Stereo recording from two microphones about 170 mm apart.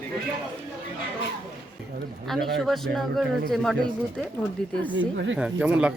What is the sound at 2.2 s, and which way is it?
Speech, centre (ahead or behind).